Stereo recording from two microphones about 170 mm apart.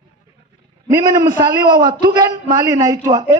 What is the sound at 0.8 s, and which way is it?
A man's voice, 20° right (ahead or behind).